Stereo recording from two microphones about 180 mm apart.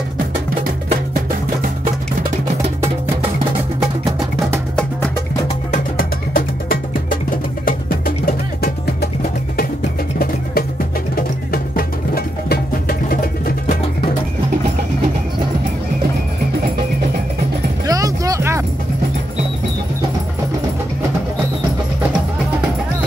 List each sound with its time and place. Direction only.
5.7 s music: 50° left (ahead or behind)
11.1 s music: 55° left (ahead or behind)
17.8 s music: 20° right (ahead or behind)